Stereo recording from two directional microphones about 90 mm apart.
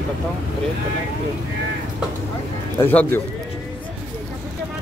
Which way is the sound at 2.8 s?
20° left (ahead or behind).